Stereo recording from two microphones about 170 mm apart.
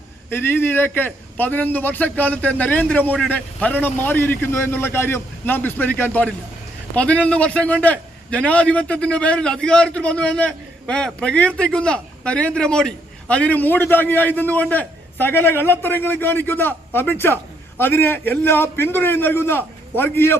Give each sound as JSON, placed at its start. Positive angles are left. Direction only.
{"t": 0.3, "sound": "a man's voice", "side_deg": 15}